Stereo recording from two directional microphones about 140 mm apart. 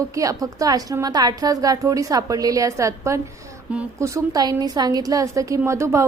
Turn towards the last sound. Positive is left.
turn(degrees=-20)  # may be behind; listen again after turning